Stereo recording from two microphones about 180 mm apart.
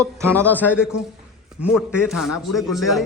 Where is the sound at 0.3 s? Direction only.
10° left (ahead or behind).